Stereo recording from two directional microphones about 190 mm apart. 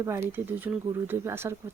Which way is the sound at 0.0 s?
15° right (ahead or behind).